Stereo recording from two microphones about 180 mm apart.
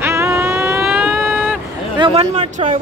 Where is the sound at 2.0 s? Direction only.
35° right (ahead or behind).